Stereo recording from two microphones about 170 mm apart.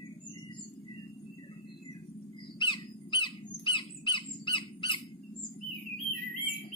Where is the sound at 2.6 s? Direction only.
30° left (ahead or behind).